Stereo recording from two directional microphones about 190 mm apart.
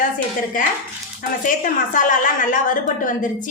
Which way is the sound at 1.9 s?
40° left (ahead or behind).